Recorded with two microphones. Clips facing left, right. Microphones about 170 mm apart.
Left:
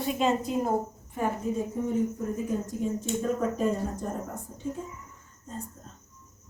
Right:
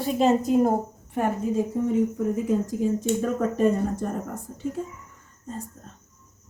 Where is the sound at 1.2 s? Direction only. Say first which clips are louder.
Right 4 dB; 70° right (ahead or behind).